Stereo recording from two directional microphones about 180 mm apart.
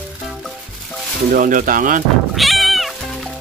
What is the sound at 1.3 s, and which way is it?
Speech, 50° right (ahead or behind).